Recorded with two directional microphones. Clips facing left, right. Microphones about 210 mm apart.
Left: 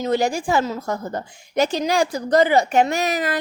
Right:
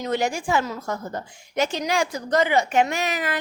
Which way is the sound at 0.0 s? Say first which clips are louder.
Left 4 dB; 35° left (ahead or behind).